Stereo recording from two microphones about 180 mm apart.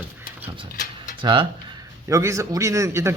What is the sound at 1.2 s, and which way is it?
Speech, 25° right (ahead or behind).